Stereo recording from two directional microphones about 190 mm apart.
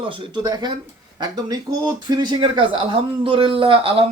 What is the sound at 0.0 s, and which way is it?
Speech, 25° right (ahead or behind).